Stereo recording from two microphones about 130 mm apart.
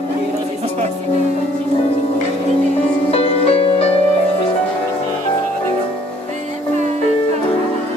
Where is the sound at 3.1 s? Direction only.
50° left (ahead or behind).